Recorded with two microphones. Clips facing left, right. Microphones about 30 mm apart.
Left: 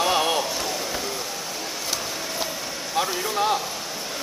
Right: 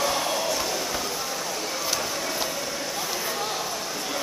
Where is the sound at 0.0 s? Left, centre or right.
Left.